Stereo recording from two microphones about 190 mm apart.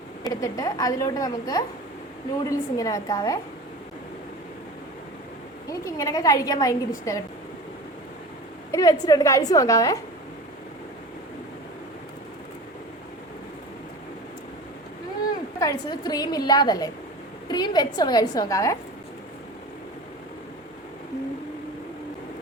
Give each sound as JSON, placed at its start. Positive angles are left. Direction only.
{"t": 0.3, "sound": "a woman's voice", "side_deg": 20}
{"t": 5.6, "sound": "a woman's voice", "side_deg": 20}
{"t": 8.7, "sound": "a woman's voice", "side_deg": 20}
{"t": 15.6, "sound": "a woman's voice", "side_deg": 20}